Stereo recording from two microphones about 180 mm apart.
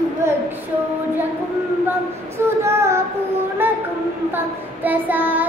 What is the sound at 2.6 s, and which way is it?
Speech, 15° right (ahead or behind).